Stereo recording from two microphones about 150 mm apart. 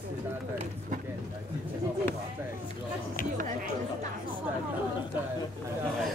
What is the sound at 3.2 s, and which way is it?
Speech, 65° left (ahead or behind).